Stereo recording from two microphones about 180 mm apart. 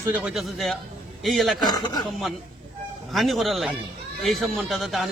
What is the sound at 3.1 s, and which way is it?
A man's voice, centre (ahead or behind).